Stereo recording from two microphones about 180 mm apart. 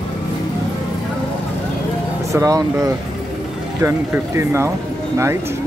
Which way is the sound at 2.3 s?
20° right (ahead or behind).